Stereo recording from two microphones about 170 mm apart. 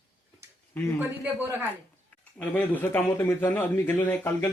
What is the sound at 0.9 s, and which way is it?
Speech, 10° right (ahead or behind).